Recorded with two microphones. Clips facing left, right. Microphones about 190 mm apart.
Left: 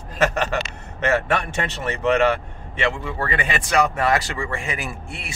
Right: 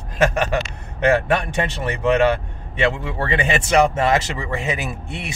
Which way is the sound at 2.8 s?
25° right (ahead or behind).